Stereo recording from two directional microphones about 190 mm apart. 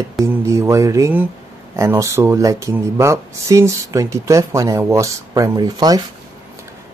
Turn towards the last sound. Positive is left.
turn(degrees=-20)  # may be behind; listen again after turning